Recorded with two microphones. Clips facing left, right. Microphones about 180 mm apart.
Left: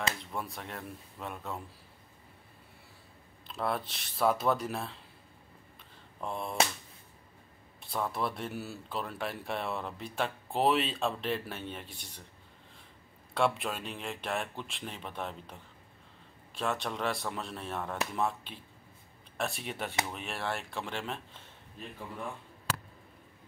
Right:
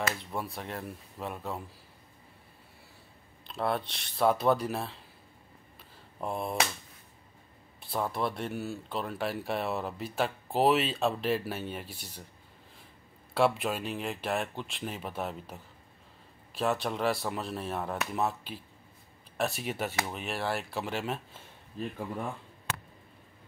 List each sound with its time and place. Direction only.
0.4 s speech: centre (ahead or behind)
3.4 s speech: centre (ahead or behind)
6.2 s a sound: 5° right (ahead or behind)
7.8 s speech: centre (ahead or behind)
13.3 s speech: 5° right (ahead or behind)
21.8 s speech: 35° right (ahead or behind)